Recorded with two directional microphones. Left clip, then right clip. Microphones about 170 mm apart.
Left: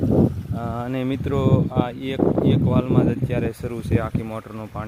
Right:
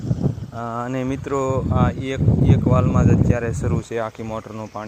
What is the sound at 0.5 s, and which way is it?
Speech, 15° left (ahead or behind).